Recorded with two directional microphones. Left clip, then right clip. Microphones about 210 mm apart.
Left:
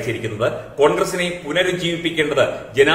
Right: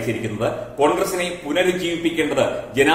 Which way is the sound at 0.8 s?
10° left (ahead or behind).